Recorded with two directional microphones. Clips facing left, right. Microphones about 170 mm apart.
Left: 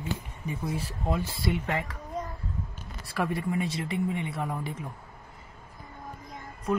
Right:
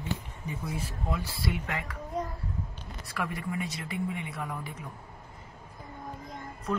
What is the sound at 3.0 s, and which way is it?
Speech, 30° left (ahead or behind).